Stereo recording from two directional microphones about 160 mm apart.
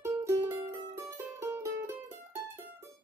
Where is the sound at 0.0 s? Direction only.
15° right (ahead or behind).